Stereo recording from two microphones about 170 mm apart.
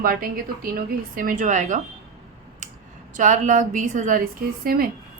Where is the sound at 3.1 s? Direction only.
45° right (ahead or behind).